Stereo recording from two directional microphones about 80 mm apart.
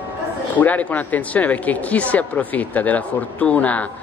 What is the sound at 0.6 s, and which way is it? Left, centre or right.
Speech, centre.